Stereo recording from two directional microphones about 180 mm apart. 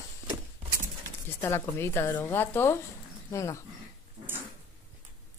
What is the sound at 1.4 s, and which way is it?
A woman's voice, 15° left (ahead or behind).